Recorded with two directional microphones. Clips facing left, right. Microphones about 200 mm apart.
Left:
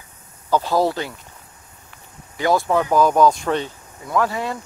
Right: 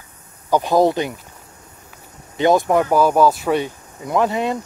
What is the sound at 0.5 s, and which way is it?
Speech, 20° right (ahead or behind).